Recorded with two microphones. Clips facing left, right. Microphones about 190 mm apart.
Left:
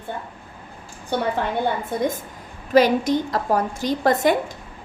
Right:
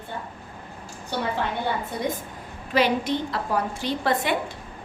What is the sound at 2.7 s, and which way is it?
A woman's voice, 45° left (ahead or behind).